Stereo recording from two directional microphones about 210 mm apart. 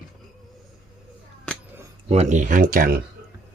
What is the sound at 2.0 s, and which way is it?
Speech, 30° right (ahead or behind).